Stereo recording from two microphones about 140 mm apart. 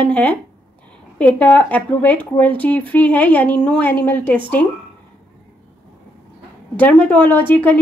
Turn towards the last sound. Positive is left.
turn(degrees=15)  # may be behind; listen again after turning